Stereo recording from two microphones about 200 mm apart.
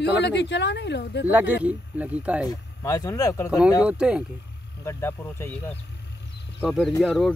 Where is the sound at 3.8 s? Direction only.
5° right (ahead or behind).